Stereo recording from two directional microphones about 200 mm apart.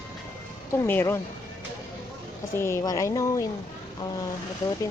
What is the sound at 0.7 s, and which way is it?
Speech, 10° left (ahead or behind).